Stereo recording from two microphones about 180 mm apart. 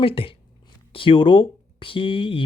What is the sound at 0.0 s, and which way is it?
Speech, 30° left (ahead or behind).